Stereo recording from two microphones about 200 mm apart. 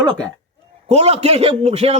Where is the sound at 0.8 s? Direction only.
30° right (ahead or behind).